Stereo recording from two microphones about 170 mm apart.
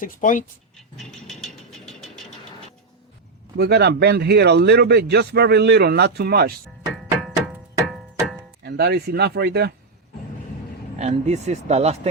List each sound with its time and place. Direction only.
0.0 s speech: 50° left (ahead or behind)
0.9 s a sound: centre (ahead or behind)
3.6 s a man's voice: 75° right (ahead or behind)
6.9 s music: centre (ahead or behind)
8.6 s a man's voice: 80° right
10.9 s speech: 40° right (ahead or behind)